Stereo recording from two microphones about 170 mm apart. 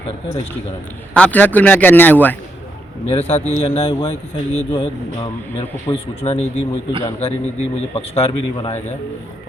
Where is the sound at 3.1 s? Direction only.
35° left (ahead or behind).